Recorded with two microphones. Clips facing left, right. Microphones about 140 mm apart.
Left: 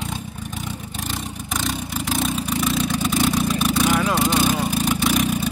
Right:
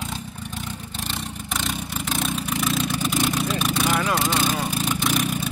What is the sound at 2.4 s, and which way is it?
Vehicle, centre (ahead or behind).